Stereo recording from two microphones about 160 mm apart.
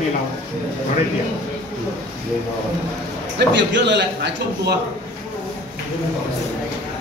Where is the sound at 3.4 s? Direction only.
90° right.